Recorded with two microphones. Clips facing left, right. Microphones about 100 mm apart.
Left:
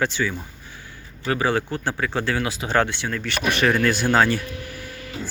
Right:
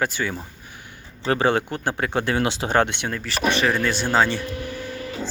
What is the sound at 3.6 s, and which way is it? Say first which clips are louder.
Speech: left 2 dB; centre (ahead or behind).